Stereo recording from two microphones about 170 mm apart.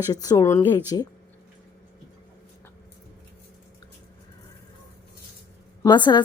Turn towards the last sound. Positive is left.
turn(degrees=25)  # may be behind; listen again after turning